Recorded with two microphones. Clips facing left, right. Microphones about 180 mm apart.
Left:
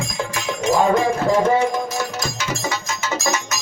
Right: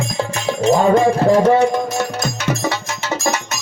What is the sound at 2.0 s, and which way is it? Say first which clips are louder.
Music: right 4 dB; 55° right (ahead or behind).